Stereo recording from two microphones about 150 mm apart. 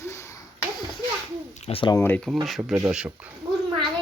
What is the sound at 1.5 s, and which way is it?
Owl, 45° left (ahead or behind).